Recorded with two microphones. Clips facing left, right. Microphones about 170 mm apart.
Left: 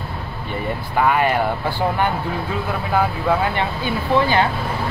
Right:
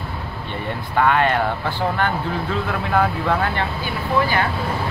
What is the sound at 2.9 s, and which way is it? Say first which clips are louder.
Speech: left 1 dB; 10° left (ahead or behind).